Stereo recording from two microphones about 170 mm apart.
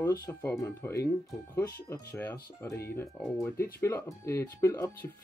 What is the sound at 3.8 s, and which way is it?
Speech, 15° left (ahead or behind).